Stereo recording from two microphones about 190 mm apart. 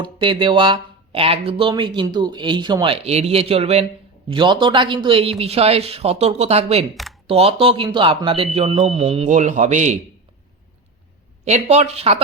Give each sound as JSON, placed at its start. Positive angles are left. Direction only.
{"t": 0.0, "sound": "speech", "side_deg": -25}
{"t": 6.9, "sound": "a sound", "side_deg": 0}
{"t": 7.3, "sound": "speech", "side_deg": -30}
{"t": 11.4, "sound": "speech", "side_deg": -35}